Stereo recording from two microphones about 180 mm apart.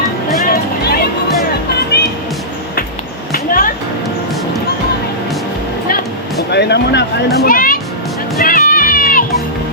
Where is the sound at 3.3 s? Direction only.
50° left (ahead or behind).